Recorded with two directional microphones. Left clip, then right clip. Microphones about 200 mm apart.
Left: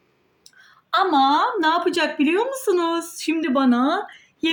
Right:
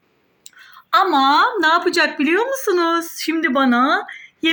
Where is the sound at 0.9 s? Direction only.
20° right (ahead or behind).